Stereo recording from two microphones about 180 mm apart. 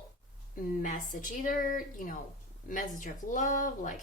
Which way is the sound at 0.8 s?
45° left (ahead or behind).